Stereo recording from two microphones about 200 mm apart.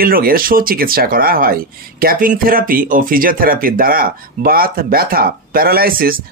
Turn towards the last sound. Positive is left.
turn(degrees=-45)  # may be behind; listen again after turning